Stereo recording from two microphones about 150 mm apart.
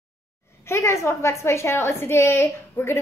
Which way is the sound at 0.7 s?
20° left (ahead or behind).